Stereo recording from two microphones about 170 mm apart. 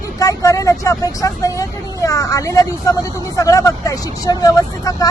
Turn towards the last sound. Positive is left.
turn(degrees=20)  # may be behind; listen again after turning